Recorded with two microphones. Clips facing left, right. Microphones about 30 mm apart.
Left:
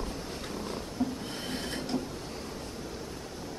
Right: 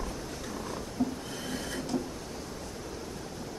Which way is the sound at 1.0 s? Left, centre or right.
Left.